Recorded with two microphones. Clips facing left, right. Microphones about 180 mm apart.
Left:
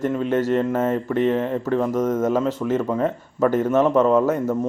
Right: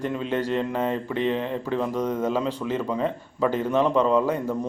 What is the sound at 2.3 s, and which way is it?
A man's voice, 45° left (ahead or behind).